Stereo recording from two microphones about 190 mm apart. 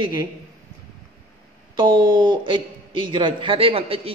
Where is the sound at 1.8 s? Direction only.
25° right (ahead or behind).